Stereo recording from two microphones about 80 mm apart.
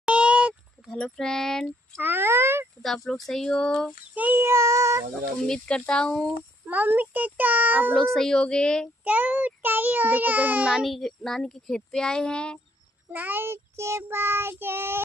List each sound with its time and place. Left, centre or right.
0.0 s goat: centre
0.9 s speech: centre
2.0 s speech: right
2.8 s speech: centre
4.1 s a child's voice: centre
4.4 s speech: right
5.5 s speech: centre
6.7 s a child's voice: right
7.9 s speech: centre
9.0 s a child's voice: right
10.8 s speech: centre
13.1 s a child's voice: right